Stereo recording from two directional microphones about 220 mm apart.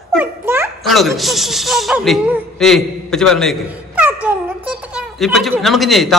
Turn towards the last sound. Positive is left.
turn(degrees=0)  # may be behind; listen again after turning